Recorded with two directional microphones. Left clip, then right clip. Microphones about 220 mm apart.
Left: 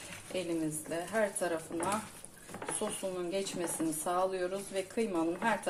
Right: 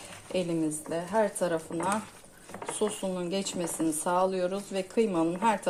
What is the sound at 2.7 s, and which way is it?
Speech, 40° right (ahead or behind).